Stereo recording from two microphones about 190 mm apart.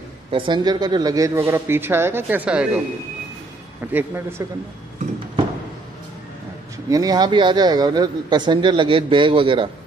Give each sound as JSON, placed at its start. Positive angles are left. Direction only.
{"t": 0.3, "sound": "speech", "side_deg": -25}
{"t": 3.9, "sound": "speech", "side_deg": -10}
{"t": 6.9, "sound": "speech", "side_deg": -20}